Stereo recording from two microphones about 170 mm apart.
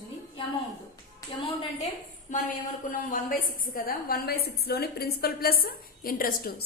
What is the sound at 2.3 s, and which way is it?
A woman's voice, 45° left (ahead or behind).